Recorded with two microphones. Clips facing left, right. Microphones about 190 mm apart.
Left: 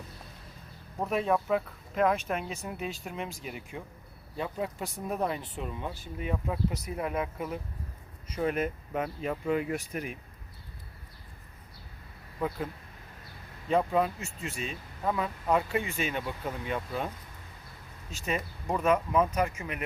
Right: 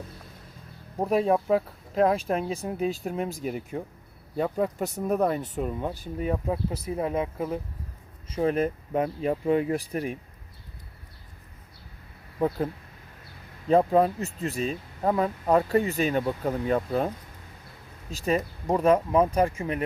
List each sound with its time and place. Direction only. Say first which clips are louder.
0.9 s speech: right 5 dB; 35° right (ahead or behind)
13.7 s speech: right 6 dB; 35° right (ahead or behind)
18.1 s speech: right 7 dB; 35° right (ahead or behind)